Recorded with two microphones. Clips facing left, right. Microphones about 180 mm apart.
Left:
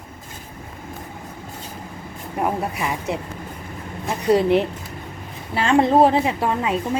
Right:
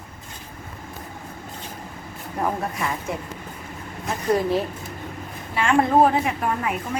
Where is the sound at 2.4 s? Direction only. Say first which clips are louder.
Left 2 dB; 15° left (ahead or behind).